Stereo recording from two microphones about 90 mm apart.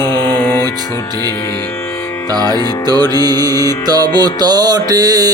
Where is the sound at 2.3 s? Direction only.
50° right (ahead or behind).